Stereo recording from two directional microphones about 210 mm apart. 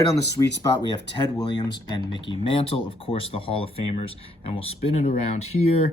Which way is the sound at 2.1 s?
25° left (ahead or behind).